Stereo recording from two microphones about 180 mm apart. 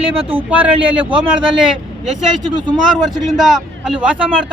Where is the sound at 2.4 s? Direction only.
25° right (ahead or behind).